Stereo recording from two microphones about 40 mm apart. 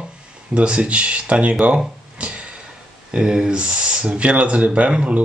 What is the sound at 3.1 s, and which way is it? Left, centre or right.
Speech, right.